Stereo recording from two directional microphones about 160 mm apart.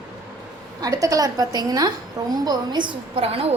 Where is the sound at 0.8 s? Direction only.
20° right (ahead or behind).